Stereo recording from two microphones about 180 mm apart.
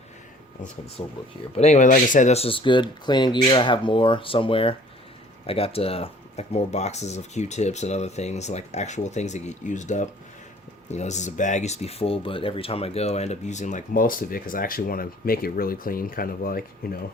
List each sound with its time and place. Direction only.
1.0 s speech: 30° left (ahead or behind); by 17.0 s 55° left (ahead or behind)